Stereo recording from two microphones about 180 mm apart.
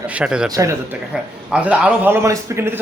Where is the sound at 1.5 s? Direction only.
5° right (ahead or behind).